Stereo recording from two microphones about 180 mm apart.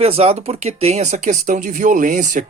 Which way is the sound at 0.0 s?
35° right (ahead or behind).